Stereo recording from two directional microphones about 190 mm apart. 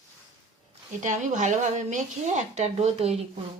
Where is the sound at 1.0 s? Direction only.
40° right (ahead or behind).